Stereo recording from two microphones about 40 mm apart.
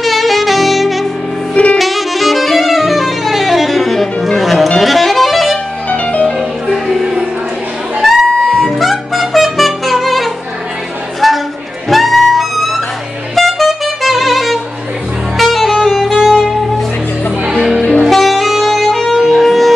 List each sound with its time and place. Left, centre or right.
0.0 s saxophone: centre
1.5 s saxophone: left
1.8 s saxophone: centre
5.9 s music: left
6.7 s music: centre
11.1 s a sound: centre
11.9 s music: centre
13.3 s saxophone: centre
15.3 s music: centre
18.1 s saxophone: centre
19.1 s music: centre